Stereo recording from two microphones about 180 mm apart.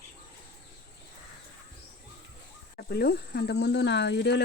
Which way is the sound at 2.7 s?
60° left (ahead or behind).